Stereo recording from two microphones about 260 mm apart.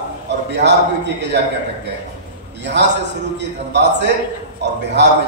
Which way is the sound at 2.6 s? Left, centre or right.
Right.